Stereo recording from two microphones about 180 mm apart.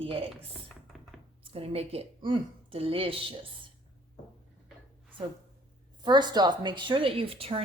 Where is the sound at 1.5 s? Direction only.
35° right (ahead or behind).